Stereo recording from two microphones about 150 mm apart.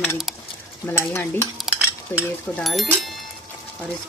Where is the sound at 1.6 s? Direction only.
5° right (ahead or behind).